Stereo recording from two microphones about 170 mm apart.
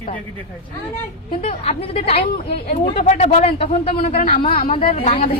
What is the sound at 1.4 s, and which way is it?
Speech, 40° left (ahead or behind).